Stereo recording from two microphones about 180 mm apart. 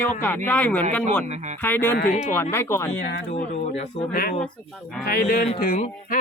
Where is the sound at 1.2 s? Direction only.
40° right (ahead or behind).